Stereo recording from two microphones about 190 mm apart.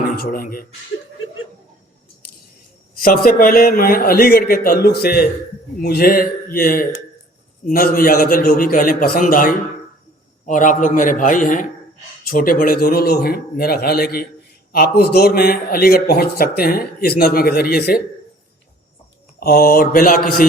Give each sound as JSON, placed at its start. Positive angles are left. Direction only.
{"t": 0.2, "sound": "a man's voice", "side_deg": 50}
{"t": 2.9, "sound": "a man's voice", "side_deg": 50}
{"t": 19.4, "sound": "a man's voice", "side_deg": 55}